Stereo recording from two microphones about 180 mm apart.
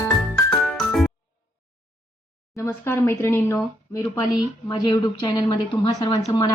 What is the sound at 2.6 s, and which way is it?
A woman's voice, 15° left (ahead or behind).